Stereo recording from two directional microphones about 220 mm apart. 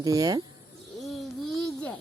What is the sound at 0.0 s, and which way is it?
Speech, 15° right (ahead or behind).